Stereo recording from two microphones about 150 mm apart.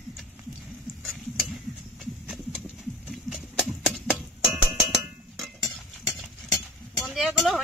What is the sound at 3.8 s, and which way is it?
Music, 5° right (ahead or behind).